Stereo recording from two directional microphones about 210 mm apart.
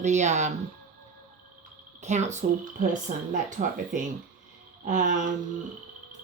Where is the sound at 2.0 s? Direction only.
35° right (ahead or behind).